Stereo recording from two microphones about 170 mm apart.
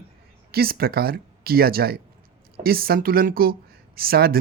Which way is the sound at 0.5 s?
65° right (ahead or behind).